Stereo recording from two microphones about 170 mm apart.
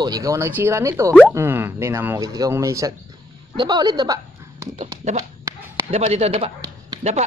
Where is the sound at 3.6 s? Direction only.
25° right (ahead or behind).